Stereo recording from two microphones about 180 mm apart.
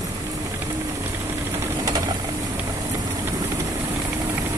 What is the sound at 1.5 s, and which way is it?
Ratchet, 20° right (ahead or behind).